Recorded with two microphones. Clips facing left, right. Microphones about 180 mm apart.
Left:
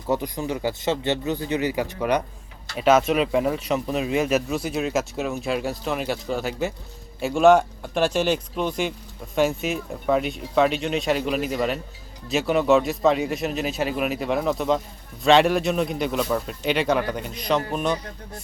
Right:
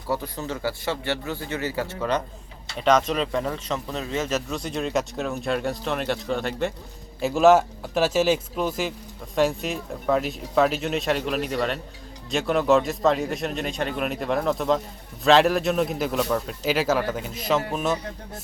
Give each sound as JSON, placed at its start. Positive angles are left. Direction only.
{"t": 0.1, "sound": "speech", "side_deg": 15}